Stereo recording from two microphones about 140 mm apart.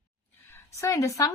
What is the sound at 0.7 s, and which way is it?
Speech, 20° left (ahead or behind).